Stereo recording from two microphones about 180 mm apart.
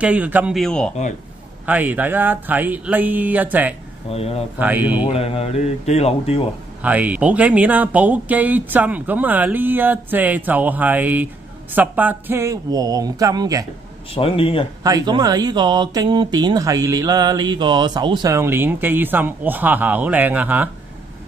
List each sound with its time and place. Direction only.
0.0 s a man's voice: 10° right (ahead or behind)
1.7 s speech: 10° right (ahead or behind)
4.1 s speech: 35° left (ahead or behind)
4.6 s speech: 10° right (ahead or behind)
5.1 s speech: 35° left (ahead or behind)
6.8 s speech: 10° right (ahead or behind)
14.1 s speech: 30° left (ahead or behind)
14.8 s speech: 20° right (ahead or behind)